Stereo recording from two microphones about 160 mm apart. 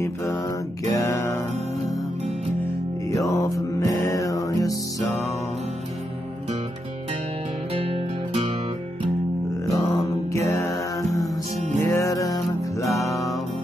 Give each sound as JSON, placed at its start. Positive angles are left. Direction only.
{"t": 0.0, "sound": "guitar", "side_deg": 20}
{"t": 0.8, "sound": "music", "side_deg": 20}
{"t": 3.1, "sound": "music", "side_deg": 20}
{"t": 7.7, "sound": "music", "side_deg": -35}
{"t": 9.7, "sound": "mantra", "side_deg": 20}
{"t": 11.8, "sound": "music", "side_deg": 15}